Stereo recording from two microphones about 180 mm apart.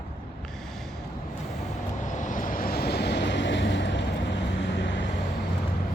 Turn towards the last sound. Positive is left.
turn(degrees=80)